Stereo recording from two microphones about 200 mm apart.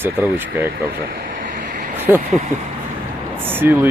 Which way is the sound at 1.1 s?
45° right (ahead or behind).